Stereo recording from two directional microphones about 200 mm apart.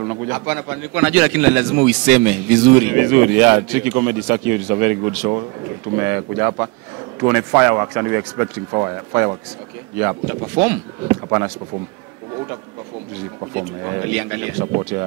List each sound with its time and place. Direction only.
0.3 s a man's voice: 15° right (ahead or behind)
10.4 s speech: 30° right (ahead or behind)
11.1 s a man's voice: 15° right (ahead or behind)
13.6 s a man's voice: 15° right (ahead or behind)
14.6 s speech: 20° right (ahead or behind)